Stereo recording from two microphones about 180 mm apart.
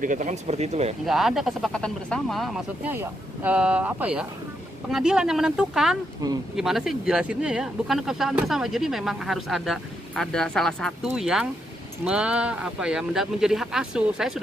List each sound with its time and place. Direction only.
0.0 s speech: 45° right (ahead or behind)
1.0 s speech: centre (ahead or behind)